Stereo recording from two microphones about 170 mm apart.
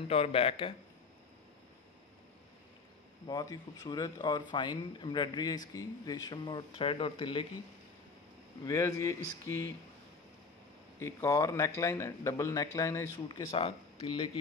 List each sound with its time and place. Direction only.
0.1 s speech: 35° left (ahead or behind)
3.3 s speech: 20° left (ahead or behind)
8.6 s speech: 20° left (ahead or behind)
11.0 s speech: 15° left (ahead or behind)
13.5 s speech: 35° left (ahead or behind)